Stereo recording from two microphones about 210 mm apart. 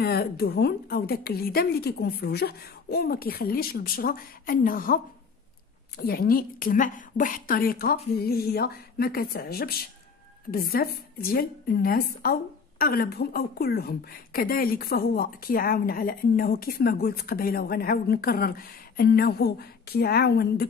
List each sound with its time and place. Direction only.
0.0 s speech: 50° left (ahead or behind)